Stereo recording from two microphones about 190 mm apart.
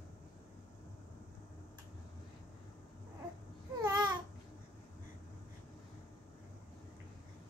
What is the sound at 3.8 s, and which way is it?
Babbling, 20° right (ahead or behind).